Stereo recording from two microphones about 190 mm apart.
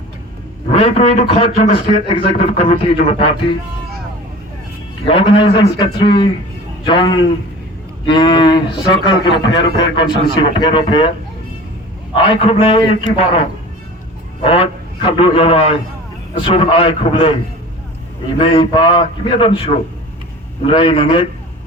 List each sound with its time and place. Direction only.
0.7 s a man's voice: 30° left (ahead or behind)
5.0 s a man's voice: 30° left (ahead or behind)
12.4 s a man's voice: 30° left (ahead or behind)
14.4 s a man's voice: 30° left (ahead or behind)
18.3 s a man's voice: 30° left (ahead or behind)